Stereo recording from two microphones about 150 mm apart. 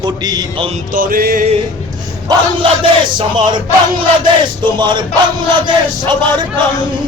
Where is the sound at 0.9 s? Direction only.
70° right (ahead or behind).